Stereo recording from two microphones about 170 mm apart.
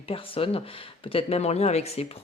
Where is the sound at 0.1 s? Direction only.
35° left (ahead or behind).